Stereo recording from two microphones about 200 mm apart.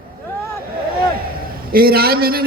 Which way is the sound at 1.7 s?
50° right (ahead or behind).